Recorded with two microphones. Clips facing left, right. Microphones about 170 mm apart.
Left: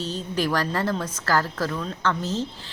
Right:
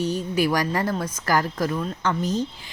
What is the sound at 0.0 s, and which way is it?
A woman's voice, 10° right (ahead or behind).